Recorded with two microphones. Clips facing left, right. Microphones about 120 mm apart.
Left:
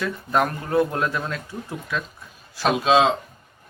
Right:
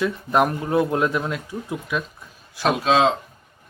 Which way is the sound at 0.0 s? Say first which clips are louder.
Right 3 dB; 20° right (ahead or behind).